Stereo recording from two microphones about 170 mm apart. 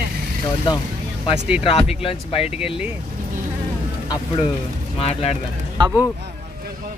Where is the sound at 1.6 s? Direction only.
35° left (ahead or behind).